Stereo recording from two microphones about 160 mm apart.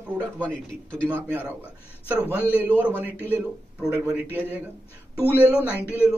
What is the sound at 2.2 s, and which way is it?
Speech, 15° left (ahead or behind).